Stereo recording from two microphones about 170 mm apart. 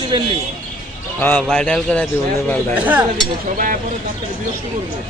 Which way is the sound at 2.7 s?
10° right (ahead or behind).